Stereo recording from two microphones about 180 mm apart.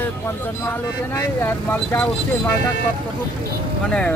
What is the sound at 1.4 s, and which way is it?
Speech, 10° left (ahead or behind).